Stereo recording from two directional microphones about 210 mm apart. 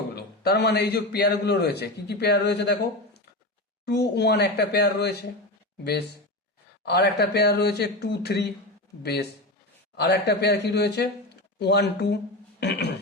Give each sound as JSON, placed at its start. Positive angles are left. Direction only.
{"t": 0.2, "sound": "a man's voice", "side_deg": 50}
{"t": 3.8, "sound": "a man's voice", "side_deg": 50}
{"t": 9.9, "sound": "a man's voice", "side_deg": 50}